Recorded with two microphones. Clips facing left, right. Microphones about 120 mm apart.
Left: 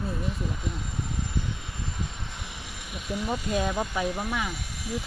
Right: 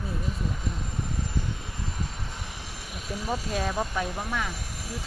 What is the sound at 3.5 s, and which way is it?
Speech, centre (ahead or behind).